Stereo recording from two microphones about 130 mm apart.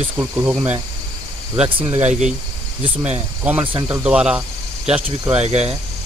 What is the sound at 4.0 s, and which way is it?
Speech, 10° right (ahead or behind).